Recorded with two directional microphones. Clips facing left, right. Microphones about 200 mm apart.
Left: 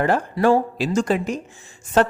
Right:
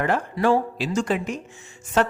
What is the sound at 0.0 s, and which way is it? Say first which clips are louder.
Speech: left 3 dB; 35° left (ahead or behind).